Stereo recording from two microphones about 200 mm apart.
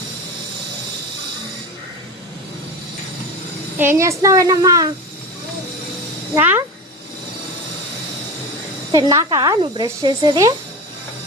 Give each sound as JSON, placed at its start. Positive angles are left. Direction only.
{"t": 3.8, "sound": "speech", "side_deg": -15}
{"t": 6.3, "sound": "speech", "side_deg": -10}
{"t": 8.9, "sound": "speech", "side_deg": -20}